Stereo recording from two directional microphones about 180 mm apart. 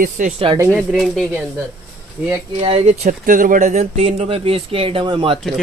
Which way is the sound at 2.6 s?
35° right (ahead or behind).